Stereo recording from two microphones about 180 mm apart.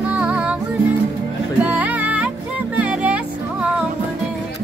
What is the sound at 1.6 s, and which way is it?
Music, 10° right (ahead or behind).